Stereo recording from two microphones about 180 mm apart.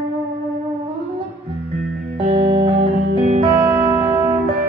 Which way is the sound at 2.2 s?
30° right (ahead or behind).